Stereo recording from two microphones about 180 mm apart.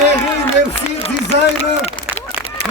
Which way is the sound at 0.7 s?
35° left (ahead or behind).